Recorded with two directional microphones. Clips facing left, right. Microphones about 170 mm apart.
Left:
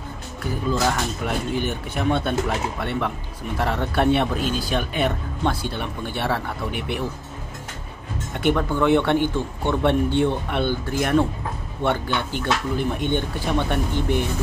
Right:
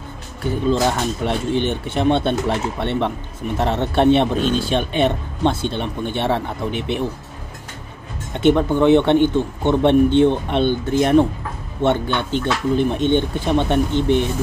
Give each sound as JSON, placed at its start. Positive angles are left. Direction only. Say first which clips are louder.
{"t": 0.7, "sound": "speech", "louder": "right 4 dB", "side_deg": -25}
{"t": 8.4, "sound": "speech", "louder": "right 6 dB", "side_deg": -25}